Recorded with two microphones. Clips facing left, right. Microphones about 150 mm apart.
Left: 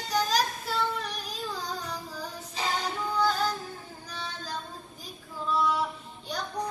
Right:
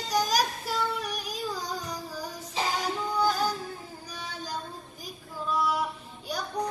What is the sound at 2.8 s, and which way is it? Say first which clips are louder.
Music: left 1 dB; 10° right (ahead or behind).